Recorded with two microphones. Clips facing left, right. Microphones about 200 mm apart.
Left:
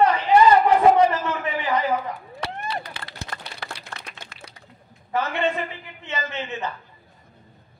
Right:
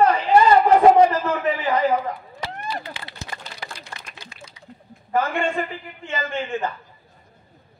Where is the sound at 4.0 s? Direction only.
65° left (ahead or behind).